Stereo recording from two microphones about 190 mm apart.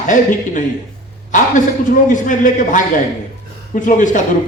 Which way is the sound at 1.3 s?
40° left (ahead or behind).